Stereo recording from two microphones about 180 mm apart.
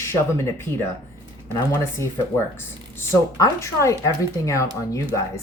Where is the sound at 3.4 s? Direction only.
15° left (ahead or behind).